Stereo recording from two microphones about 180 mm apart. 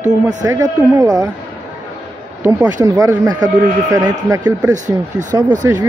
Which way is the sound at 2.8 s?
20° right (ahead or behind).